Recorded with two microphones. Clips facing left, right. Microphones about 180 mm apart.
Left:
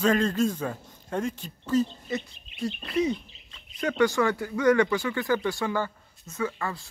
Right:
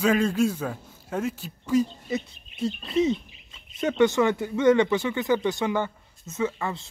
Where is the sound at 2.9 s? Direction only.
25° right (ahead or behind).